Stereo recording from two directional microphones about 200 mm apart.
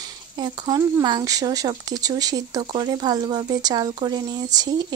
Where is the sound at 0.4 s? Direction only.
20° right (ahead or behind).